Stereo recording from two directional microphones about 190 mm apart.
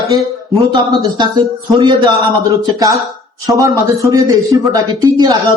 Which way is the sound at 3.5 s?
15° right (ahead or behind).